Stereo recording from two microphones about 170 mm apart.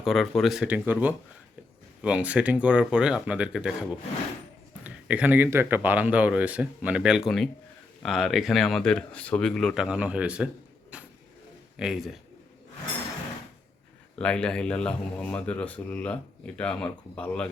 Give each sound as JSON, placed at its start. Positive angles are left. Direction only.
{"t": 0.0, "sound": "speech", "side_deg": 0}
{"t": 4.8, "sound": "speech", "side_deg": -10}
{"t": 10.9, "sound": "vehicle", "side_deg": -5}
{"t": 11.8, "sound": "speech", "side_deg": 0}
{"t": 14.2, "sound": "speech", "side_deg": 5}